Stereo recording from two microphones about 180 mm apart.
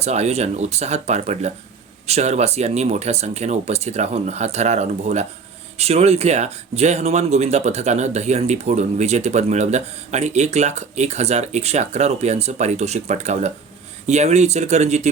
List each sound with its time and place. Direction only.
0.0 s speech: 35° right (ahead or behind)